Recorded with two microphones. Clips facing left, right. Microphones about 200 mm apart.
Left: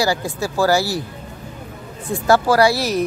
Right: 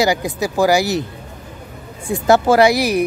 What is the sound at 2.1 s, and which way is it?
Speech, 20° right (ahead or behind).